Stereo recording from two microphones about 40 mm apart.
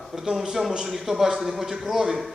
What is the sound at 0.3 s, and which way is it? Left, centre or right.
Speech, right.